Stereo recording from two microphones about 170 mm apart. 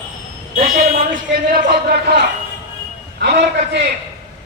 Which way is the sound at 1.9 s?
75° right (ahead or behind).